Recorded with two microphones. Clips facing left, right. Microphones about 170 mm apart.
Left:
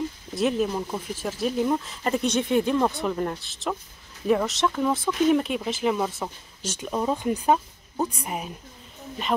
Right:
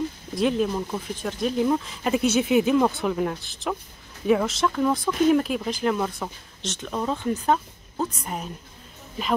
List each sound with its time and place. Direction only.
0.3 s speech: 5° left (ahead or behind)